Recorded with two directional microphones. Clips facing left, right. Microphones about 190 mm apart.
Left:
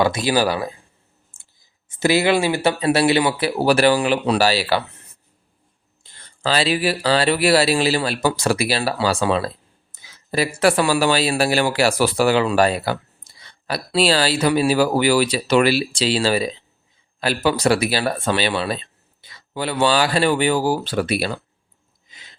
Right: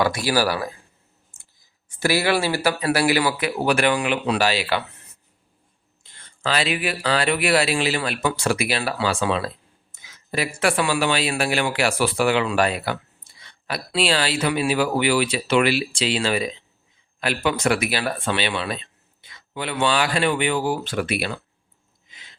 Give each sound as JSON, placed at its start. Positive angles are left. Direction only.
{"t": 0.0, "sound": "speech", "side_deg": 20}
{"t": 1.3, "sound": "clicking", "side_deg": 30}
{"t": 2.0, "sound": "speech", "side_deg": 20}
{"t": 6.0, "sound": "speech", "side_deg": 35}